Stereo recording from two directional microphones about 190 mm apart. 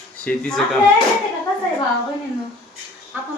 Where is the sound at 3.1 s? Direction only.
10° right (ahead or behind).